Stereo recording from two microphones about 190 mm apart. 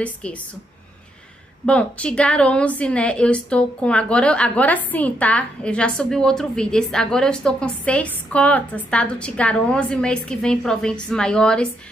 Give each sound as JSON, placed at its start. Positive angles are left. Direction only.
{"t": 0.0, "sound": "a woman's voice", "side_deg": 5}
{"t": 1.7, "sound": "a woman's voice", "side_deg": 5}